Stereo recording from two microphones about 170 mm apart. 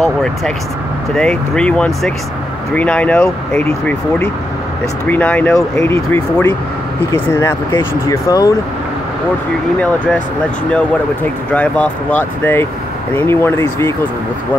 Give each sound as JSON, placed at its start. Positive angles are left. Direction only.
{"t": 1.1, "sound": "speech", "side_deg": 5}
{"t": 5.0, "sound": "speech", "side_deg": 10}
{"t": 11.5, "sound": "speech", "side_deg": 5}